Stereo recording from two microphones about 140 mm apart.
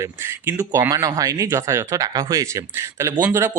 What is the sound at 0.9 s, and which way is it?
Speech, 25° right (ahead or behind).